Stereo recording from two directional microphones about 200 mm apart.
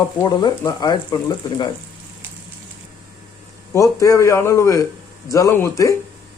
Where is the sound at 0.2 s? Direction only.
15° left (ahead or behind).